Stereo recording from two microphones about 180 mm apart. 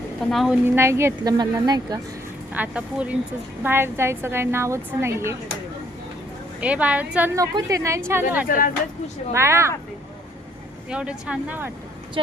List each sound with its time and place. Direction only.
0.3 s a woman's voice: centre (ahead or behind)
0.6 s a woman's voice: 15° right (ahead or behind)
2.5 s a woman's voice: 10° right (ahead or behind)
6.6 s a woman's voice: 5° right (ahead or behind)
8.4 s speech: 50° left (ahead or behind)
9.3 s a woman's voice: 15° right (ahead or behind)
10.8 s a woman's voice: 5° right (ahead or behind)
12.2 s speech: 30° right (ahead or behind)